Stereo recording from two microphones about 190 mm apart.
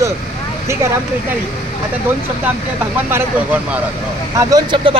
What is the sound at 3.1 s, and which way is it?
Speech, 10° right (ahead or behind).